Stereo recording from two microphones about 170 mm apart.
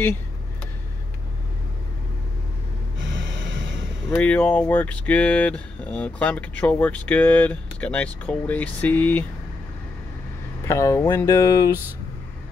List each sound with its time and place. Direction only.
4.1 s speech: 10° left (ahead or behind)
10.6 s speech: 15° left (ahead or behind)